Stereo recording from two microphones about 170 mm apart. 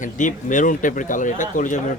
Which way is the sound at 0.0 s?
50° left (ahead or behind).